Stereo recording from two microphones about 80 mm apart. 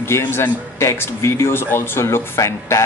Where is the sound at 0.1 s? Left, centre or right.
Left.